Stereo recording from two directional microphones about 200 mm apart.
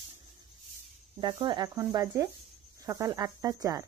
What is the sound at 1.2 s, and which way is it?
Speech, 25° right (ahead or behind).